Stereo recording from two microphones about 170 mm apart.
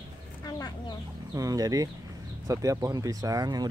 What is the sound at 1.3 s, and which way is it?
Speech, 20° right (ahead or behind).